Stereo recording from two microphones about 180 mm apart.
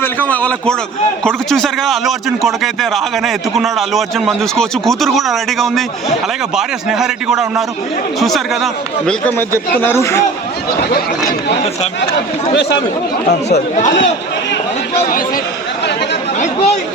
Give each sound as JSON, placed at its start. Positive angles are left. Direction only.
{"t": 0.0, "sound": "a man's voice", "side_deg": 10}
{"t": 9.8, "sound": "a man's voice", "side_deg": 15}
{"t": 10.8, "sound": "speech", "side_deg": 60}
{"t": 16.4, "sound": "chatter", "side_deg": 35}